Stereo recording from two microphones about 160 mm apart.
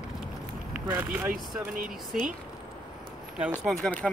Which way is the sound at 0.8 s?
10° right (ahead or behind).